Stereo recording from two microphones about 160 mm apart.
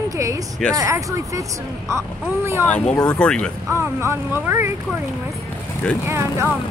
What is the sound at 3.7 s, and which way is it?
Speech, 15° right (ahead or behind).